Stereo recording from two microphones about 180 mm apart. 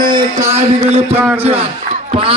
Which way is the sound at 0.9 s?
35° right (ahead or behind).